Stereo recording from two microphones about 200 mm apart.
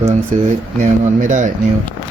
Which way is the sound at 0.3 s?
40° right (ahead or behind).